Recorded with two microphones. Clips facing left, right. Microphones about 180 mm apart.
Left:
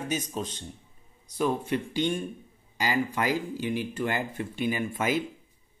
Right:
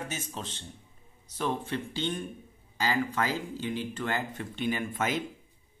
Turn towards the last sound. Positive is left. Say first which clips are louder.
# left 3 dB
turn(degrees=10)  # may be behind; listen again after turning